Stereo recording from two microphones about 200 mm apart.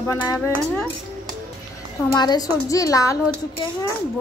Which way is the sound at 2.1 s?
20° left (ahead or behind).